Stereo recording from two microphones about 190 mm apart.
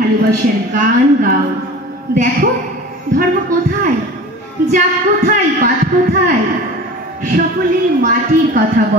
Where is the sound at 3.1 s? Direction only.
45° right (ahead or behind).